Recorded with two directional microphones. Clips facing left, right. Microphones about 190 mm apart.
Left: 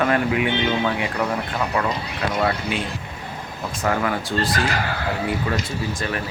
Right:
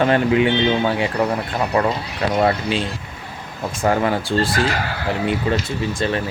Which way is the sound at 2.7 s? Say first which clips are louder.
Right 3 dB; 30° right (ahead or behind).